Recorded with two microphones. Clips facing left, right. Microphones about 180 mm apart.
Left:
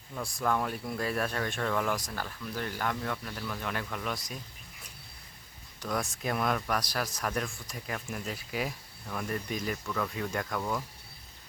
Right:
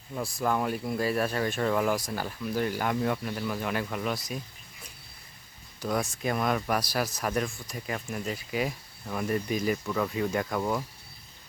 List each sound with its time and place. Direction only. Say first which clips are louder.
0.2 s speech: right 2 dB; 5° right (ahead or behind)
5.8 s speech: right 4 dB; centre (ahead or behind)
10.6 s speech: right 4 dB; 20° right (ahead or behind)